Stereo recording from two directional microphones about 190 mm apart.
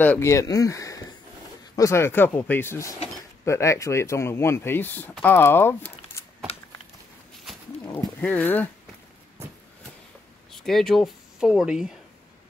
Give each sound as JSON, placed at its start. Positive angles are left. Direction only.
{"t": 0.0, "sound": "speech", "side_deg": 10}
{"t": 7.8, "sound": "speech", "side_deg": 10}
{"t": 10.5, "sound": "speech", "side_deg": 0}